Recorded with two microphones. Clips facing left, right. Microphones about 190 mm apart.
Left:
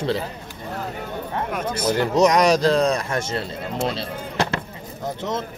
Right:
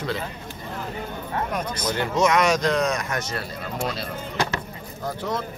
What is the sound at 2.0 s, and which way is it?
Speech, 35° left (ahead or behind).